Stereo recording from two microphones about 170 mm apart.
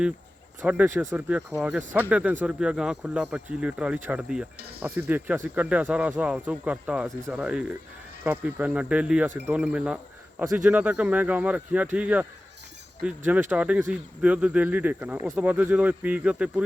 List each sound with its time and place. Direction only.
0.6 s speech: 10° right (ahead or behind)